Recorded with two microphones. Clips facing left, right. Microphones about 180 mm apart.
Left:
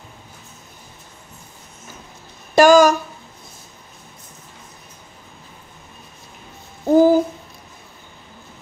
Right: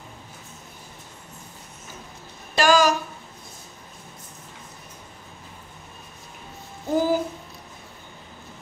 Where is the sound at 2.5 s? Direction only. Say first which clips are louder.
Left 8 dB; 45° left (ahead or behind).